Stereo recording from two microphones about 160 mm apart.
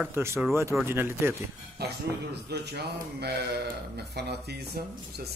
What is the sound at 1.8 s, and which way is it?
A man's voice, 85° right.